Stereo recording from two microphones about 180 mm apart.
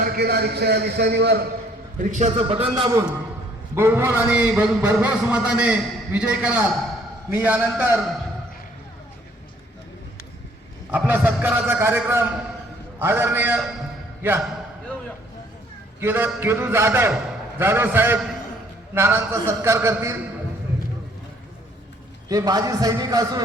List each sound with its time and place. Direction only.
0.0 s a man's voice: 60° right (ahead or behind)
2.0 s a man's voice: 45° right (ahead or behind)
3.8 s a man's voice: 15° right (ahead or behind)
10.9 s a man's voice: 10° right (ahead or behind)
16.0 s a man's voice: 10° right (ahead or behind)
22.3 s a man's voice: 20° right (ahead or behind)